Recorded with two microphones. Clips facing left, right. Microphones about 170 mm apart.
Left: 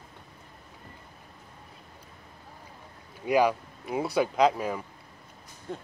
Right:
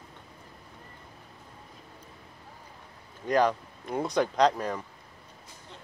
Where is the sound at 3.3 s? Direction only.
10° left (ahead or behind).